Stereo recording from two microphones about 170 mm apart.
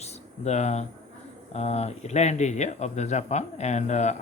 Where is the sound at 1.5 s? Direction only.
40° left (ahead or behind).